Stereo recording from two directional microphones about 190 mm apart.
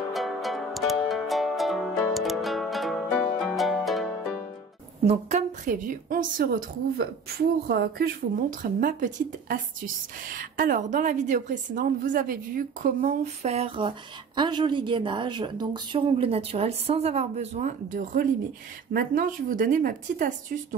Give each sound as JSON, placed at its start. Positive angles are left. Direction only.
{"t": 0.1, "sound": "music", "side_deg": 0}
{"t": 5.0, "sound": "a woman's voice", "side_deg": -35}